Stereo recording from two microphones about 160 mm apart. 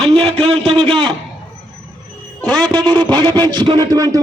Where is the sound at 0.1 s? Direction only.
35° right (ahead or behind).